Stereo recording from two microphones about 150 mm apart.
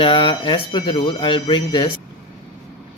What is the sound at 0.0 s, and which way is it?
Speech, 35° left (ahead or behind).